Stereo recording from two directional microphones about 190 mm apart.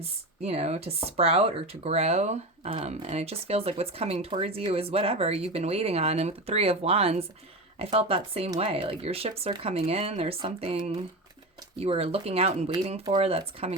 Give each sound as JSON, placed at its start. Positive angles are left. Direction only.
{"t": 0.0, "sound": "speech", "side_deg": -35}